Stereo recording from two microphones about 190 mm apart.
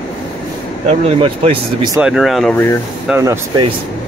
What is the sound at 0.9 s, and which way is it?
Speech, 30° right (ahead or behind).